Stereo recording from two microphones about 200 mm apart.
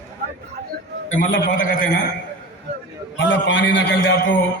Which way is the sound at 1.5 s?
45° left (ahead or behind).